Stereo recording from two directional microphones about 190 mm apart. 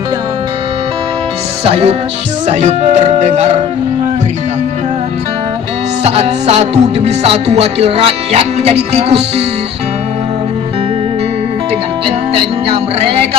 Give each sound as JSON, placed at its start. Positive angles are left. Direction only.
{"t": 1.7, "sound": "music", "side_deg": -35}
{"t": 6.0, "sound": "music", "side_deg": -35}
{"t": 12.0, "sound": "music", "side_deg": -30}